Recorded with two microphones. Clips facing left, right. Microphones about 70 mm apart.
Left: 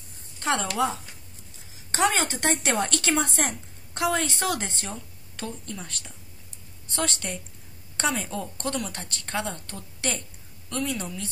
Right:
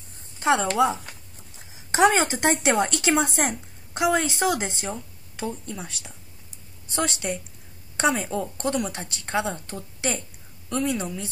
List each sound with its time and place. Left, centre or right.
0.4 s a woman's voice: centre